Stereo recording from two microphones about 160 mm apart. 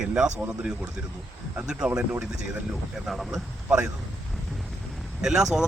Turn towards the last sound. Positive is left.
turn(degrees=-5)  # may be behind; listen again after turning